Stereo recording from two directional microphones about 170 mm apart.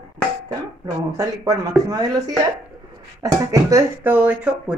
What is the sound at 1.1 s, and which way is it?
Speech, 20° right (ahead or behind).